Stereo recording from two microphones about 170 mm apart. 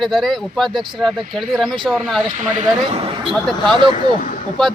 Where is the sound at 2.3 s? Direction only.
45° right (ahead or behind).